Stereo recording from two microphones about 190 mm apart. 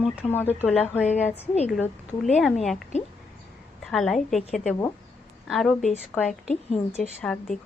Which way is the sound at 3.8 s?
Centre (ahead or behind).